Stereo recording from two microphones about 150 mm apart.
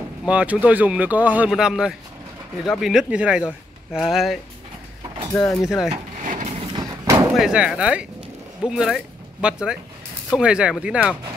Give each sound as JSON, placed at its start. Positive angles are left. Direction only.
{"t": 0.3, "sound": "speech", "side_deg": -10}
{"t": 5.3, "sound": "speech", "side_deg": 10}
{"t": 5.7, "sound": "speech", "side_deg": -5}
{"t": 6.2, "sound": "a sound", "side_deg": -55}
{"t": 6.6, "sound": "a sound", "side_deg": -25}
{"t": 7.3, "sound": "speech", "side_deg": -5}